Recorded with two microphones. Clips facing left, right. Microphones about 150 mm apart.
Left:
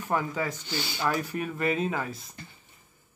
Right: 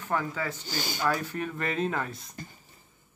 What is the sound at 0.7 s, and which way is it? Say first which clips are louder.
Speech: even; 45° right (ahead or behind).